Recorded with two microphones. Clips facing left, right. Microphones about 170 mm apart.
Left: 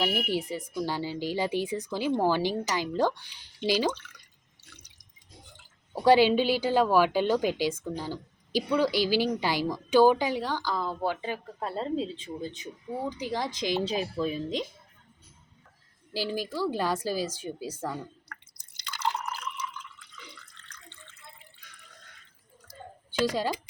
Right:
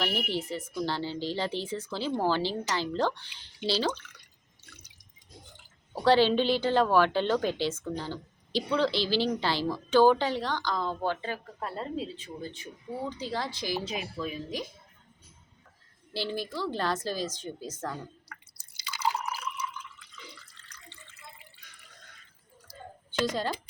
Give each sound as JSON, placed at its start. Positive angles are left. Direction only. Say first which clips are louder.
{"t": 0.0, "sound": "a woman's voice", "louder": "left 3 dB", "side_deg": 10}
{"t": 6.0, "sound": "a woman's voice", "louder": "left 2 dB", "side_deg": 10}
{"t": 13.9, "sound": "speech", "louder": "left 5 dB", "side_deg": 35}
{"t": 16.1, "sound": "a woman's voice", "louder": "left 2 dB", "side_deg": 10}
{"t": 18.3, "sound": "drip", "louder": "left 1 dB", "side_deg": 0}
{"t": 20.5, "sound": "water", "louder": "left 1 dB", "side_deg": -5}
{"t": 23.1, "sound": "a woman's voice", "louder": "left 2 dB", "side_deg": 10}